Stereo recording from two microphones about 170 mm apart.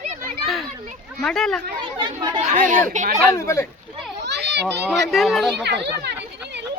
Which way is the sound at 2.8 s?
45° right (ahead or behind).